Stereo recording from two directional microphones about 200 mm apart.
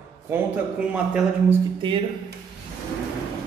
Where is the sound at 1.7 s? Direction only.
25° right (ahead or behind).